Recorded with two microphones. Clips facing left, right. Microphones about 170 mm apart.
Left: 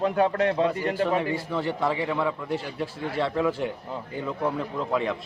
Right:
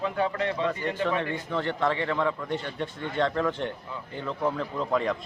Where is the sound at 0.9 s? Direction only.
10° left (ahead or behind).